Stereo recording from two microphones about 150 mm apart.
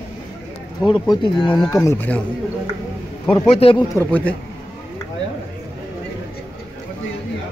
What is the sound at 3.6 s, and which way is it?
Speech, 40° left (ahead or behind).